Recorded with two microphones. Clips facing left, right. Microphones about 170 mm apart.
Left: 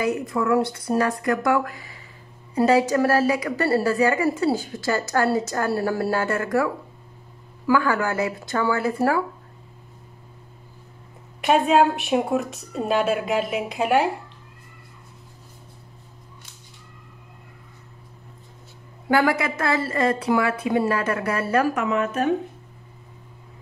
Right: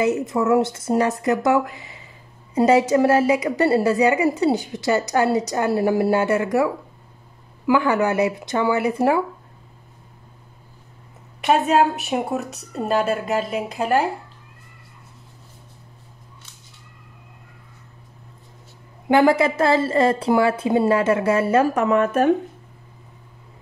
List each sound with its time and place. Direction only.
0.0 s a woman's voice: 25° right (ahead or behind)
11.4 s a woman's voice: centre (ahead or behind)
19.0 s a woman's voice: 25° right (ahead or behind)
21.8 s speech: 50° right (ahead or behind)